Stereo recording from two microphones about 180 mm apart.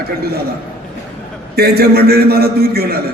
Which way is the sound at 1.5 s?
60° right (ahead or behind).